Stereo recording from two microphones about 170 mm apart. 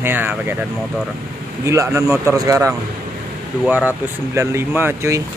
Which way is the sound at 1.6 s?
15° right (ahead or behind).